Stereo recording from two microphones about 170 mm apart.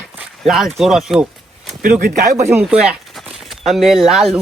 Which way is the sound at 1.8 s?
50° right (ahead or behind).